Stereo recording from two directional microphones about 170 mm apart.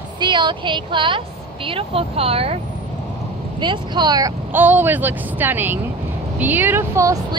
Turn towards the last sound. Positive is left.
turn(degrees=-20)  # may be behind; listen again after turning